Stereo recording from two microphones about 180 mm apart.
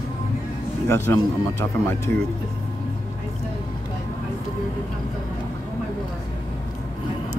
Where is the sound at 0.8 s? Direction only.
15° left (ahead or behind).